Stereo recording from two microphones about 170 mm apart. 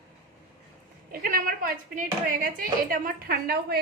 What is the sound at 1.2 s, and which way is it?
A woman's voice, 55° right (ahead or behind).